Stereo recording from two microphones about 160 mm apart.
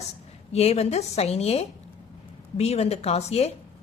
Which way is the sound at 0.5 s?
40° left (ahead or behind).